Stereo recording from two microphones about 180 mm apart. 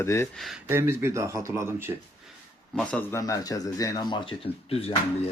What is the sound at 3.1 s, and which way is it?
Speech, 20° left (ahead or behind).